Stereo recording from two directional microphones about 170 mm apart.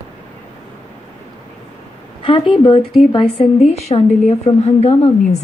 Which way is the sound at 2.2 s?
30° left (ahead or behind).